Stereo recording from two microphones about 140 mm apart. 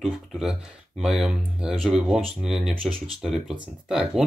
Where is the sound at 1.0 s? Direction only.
5° right (ahead or behind).